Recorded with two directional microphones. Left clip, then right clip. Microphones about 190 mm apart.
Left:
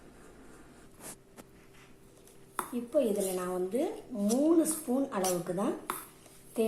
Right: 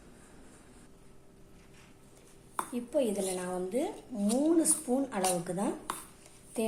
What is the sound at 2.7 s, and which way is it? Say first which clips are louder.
A woman's voice: left 2 dB; 15° right (ahead or behind).